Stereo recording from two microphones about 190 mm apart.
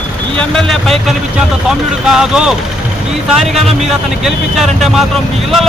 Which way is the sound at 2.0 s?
5° right (ahead or behind).